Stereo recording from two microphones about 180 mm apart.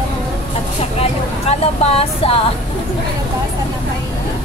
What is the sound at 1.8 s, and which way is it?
Speech, 35° left (ahead or behind).